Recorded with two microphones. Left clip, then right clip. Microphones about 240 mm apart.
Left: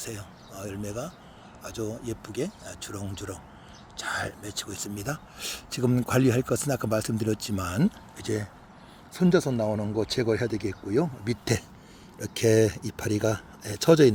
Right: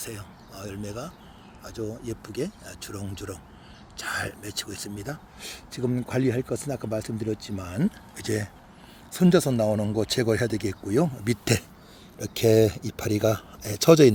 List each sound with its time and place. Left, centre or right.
0.0 s speech: centre
4.9 s speech: centre
7.9 s speech: centre
12.2 s speech: centre